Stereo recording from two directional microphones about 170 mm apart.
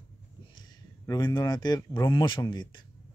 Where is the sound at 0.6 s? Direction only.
25° left (ahead or behind).